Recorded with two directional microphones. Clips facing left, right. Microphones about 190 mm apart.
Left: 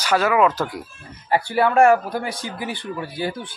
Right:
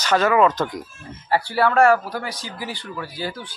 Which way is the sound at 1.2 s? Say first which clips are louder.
Left 1 dB; 20° left (ahead or behind).